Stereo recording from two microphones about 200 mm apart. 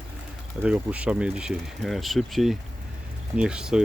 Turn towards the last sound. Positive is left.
turn(degrees=-5)  # may be behind; listen again after turning